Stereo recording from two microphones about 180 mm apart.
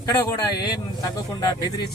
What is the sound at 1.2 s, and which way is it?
Speech, 20° left (ahead or behind).